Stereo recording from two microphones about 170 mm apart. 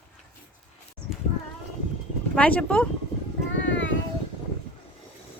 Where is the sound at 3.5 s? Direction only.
90° left.